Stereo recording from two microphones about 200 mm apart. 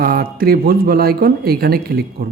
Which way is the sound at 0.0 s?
50° right (ahead or behind).